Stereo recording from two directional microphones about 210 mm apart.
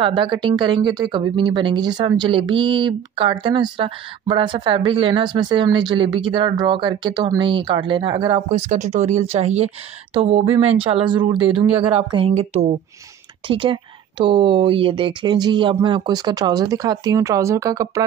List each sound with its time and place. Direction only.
0.0 s speech: 25° right (ahead or behind)